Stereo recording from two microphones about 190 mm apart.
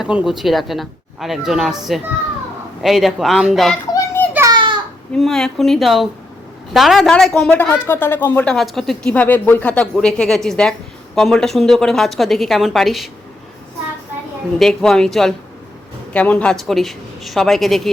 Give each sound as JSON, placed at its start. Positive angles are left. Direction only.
{"t": 0.0, "sound": "speech", "side_deg": -5}
{"t": 2.8, "sound": "speech", "side_deg": 0}
{"t": 3.9, "sound": "children playing", "side_deg": 15}
{"t": 4.4, "sound": "a sound", "side_deg": -20}
{"t": 5.1, "sound": "speech", "side_deg": 0}
{"t": 14.6, "sound": "speech", "side_deg": 5}